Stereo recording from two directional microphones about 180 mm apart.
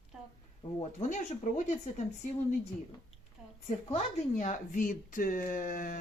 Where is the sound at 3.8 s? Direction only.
40° left (ahead or behind).